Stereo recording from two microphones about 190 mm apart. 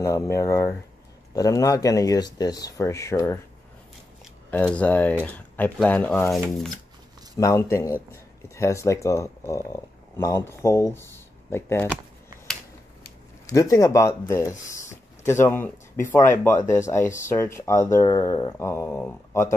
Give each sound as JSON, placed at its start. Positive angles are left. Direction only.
{"t": 0.0, "sound": "speech", "side_deg": 15}
{"t": 4.5, "sound": "speech", "side_deg": 5}
{"t": 7.3, "sound": "speech", "side_deg": 15}
{"t": 13.5, "sound": "speech", "side_deg": 15}